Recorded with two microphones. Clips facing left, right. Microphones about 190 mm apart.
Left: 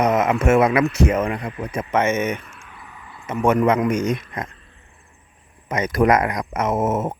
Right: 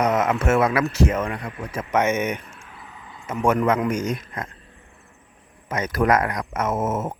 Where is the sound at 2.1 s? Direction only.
15° right (ahead or behind).